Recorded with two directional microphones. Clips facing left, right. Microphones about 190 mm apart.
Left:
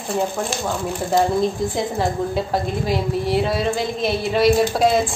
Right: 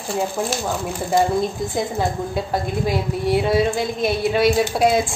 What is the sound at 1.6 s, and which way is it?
A woman's voice, centre (ahead or behind).